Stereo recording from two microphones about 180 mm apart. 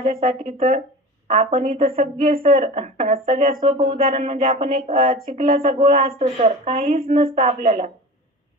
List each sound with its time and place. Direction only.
0.1 s speech: 35° right (ahead or behind)